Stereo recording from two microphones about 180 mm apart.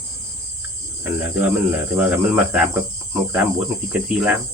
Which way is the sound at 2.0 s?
5° right (ahead or behind).